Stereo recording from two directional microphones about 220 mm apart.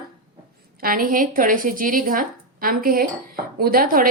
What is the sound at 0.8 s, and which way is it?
Speech, 40° right (ahead or behind).